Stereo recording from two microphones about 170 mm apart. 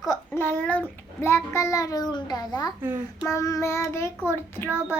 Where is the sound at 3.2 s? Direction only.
20° left (ahead or behind).